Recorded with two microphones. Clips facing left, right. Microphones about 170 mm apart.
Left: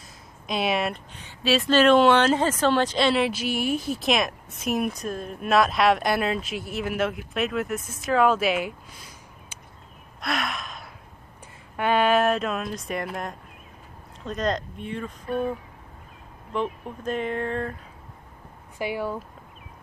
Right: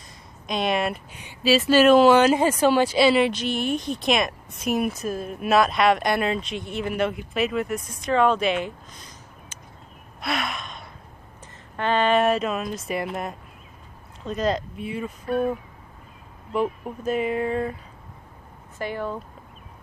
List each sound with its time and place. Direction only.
0.5 s speech: 5° left (ahead or behind)
10.2 s gasp: centre (ahead or behind)
11.7 s speech: 10° left (ahead or behind); by 15.1 s 5° right (ahead or behind)
17.0 s a sound: 5° right (ahead or behind)
18.8 s speech: 10° left (ahead or behind)